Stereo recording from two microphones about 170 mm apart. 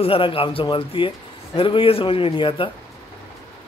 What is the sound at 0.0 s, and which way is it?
A man's voice, 35° left (ahead or behind).